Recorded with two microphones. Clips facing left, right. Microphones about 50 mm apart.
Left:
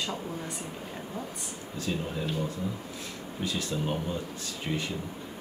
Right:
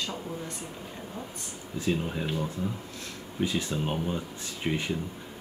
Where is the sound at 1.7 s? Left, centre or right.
Centre.